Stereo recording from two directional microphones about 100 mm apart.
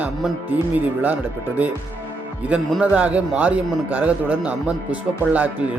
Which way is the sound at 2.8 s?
15° right (ahead or behind).